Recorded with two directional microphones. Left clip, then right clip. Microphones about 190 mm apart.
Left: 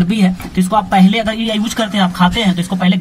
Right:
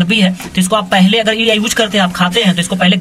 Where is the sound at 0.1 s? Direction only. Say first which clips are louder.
Right 5 dB; centre (ahead or behind).